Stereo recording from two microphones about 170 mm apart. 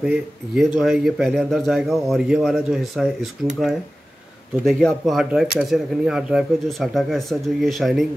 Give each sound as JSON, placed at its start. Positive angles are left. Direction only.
{"t": 0.0, "sound": "speech", "side_deg": -5}
{"t": 4.6, "sound": "speech", "side_deg": 0}